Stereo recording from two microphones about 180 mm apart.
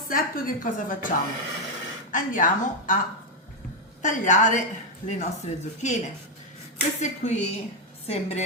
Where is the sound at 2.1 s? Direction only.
45° left (ahead or behind).